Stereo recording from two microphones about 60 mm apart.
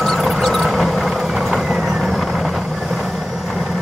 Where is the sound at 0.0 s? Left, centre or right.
Centre.